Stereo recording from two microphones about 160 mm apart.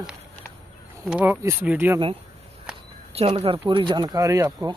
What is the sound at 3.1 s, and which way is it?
Speech, 35° right (ahead or behind).